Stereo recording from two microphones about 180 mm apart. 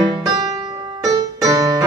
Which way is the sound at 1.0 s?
20° right (ahead or behind).